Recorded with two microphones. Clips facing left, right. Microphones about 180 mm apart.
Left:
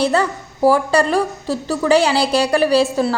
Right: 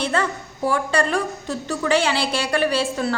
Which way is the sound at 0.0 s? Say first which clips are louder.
Left 6 dB; 35° left (ahead or behind).